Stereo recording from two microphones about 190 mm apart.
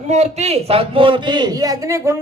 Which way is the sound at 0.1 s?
35° right (ahead or behind).